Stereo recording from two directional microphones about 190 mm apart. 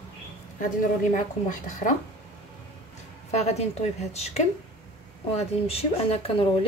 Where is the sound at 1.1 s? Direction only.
40° left (ahead or behind).